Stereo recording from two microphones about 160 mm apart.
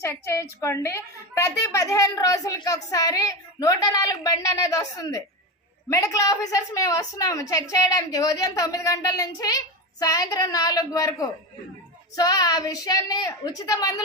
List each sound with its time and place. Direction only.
0.0 s a woman's voice: 15° left (ahead or behind)